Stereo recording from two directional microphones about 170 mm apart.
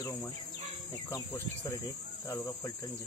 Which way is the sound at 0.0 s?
20° left (ahead or behind).